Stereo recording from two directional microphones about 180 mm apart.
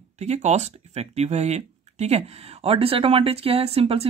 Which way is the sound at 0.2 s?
40° right (ahead or behind).